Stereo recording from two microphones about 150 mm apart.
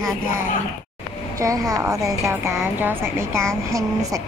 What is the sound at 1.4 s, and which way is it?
Speech, 20° right (ahead or behind).